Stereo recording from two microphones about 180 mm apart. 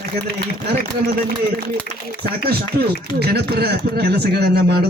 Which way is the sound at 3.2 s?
60° right (ahead or behind).